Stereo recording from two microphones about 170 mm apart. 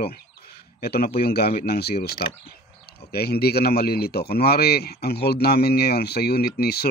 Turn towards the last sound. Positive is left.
turn(degrees=65)  # may be behind; listen again after turning